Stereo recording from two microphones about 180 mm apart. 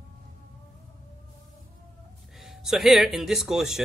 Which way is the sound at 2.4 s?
Centre (ahead or behind).